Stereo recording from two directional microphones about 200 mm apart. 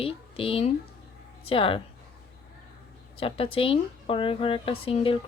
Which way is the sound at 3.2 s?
30° left (ahead or behind).